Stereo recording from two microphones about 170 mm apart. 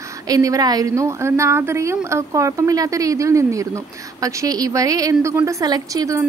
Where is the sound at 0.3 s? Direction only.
20° right (ahead or behind).